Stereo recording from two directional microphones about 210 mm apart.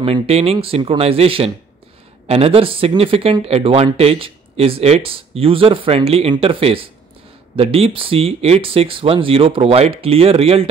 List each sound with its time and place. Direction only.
0.0 s speech: 30° right (ahead or behind)